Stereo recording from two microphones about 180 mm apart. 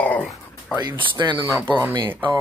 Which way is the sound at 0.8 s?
25° right (ahead or behind).